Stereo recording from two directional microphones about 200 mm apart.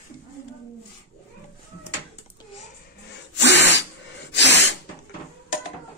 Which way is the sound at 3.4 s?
60° left (ahead or behind).